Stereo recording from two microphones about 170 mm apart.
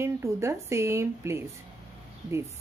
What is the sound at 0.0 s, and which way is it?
Speech, 15° right (ahead or behind).